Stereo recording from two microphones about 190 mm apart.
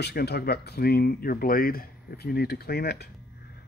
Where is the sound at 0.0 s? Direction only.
60° left (ahead or behind).